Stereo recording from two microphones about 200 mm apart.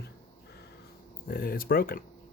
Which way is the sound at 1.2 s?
50° left (ahead or behind).